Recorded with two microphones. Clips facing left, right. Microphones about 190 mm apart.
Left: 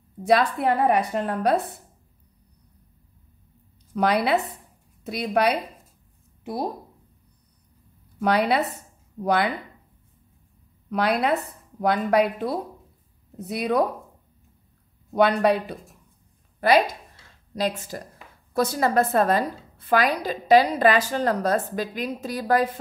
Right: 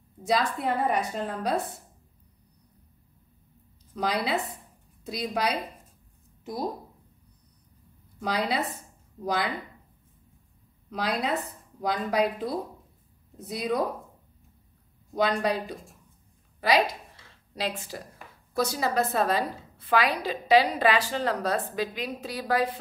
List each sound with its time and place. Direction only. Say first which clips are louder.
0.2 s a woman's voice: left 6 dB; 65° left (ahead or behind)
3.9 s a woman's voice: left 6 dB; 65° left (ahead or behind)
8.2 s a woman's voice: left 7 dB; 65° left (ahead or behind)
10.9 s a woman's voice: left 6 dB; 65° left (ahead or behind)
15.1 s a woman's voice: left 6 dB; 60° left (ahead or behind)
17.6 s a woman's voice: left 6 dB; 45° left (ahead or behind)
18.6 s a woman's voice: left 5 dB; 55° left (ahead or behind)